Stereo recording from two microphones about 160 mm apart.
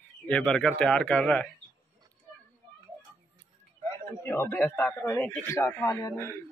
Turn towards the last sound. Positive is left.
turn(degrees=15)  # may be behind; listen again after turning